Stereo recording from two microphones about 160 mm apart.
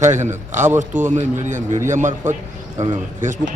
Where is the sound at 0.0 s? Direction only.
50° right (ahead or behind).